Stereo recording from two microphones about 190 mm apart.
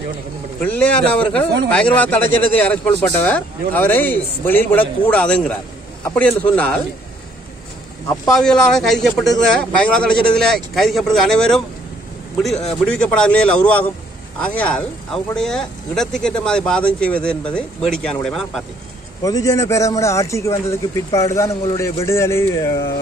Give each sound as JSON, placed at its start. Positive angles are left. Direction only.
{"t": 0.6, "sound": "speech", "side_deg": 5}
{"t": 8.3, "sound": "speech", "side_deg": 5}
{"t": 19.2, "sound": "speech", "side_deg": 20}